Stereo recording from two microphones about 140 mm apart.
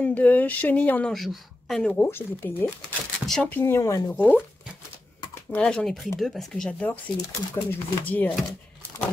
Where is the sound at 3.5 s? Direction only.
15° left (ahead or behind).